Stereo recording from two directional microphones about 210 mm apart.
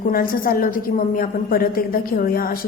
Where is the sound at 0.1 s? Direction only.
45° left (ahead or behind).